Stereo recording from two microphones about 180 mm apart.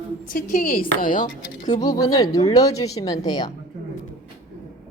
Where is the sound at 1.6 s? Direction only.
20° left (ahead or behind).